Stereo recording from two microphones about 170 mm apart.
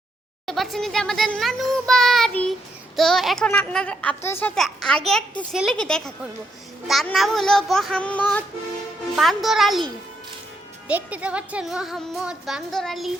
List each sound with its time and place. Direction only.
0.4 s a child's voice: centre (ahead or behind)
4.5 s a child's voice: 5° left (ahead or behind)